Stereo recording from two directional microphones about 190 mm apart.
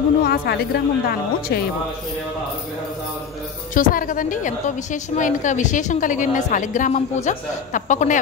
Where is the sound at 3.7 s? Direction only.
45° left (ahead or behind).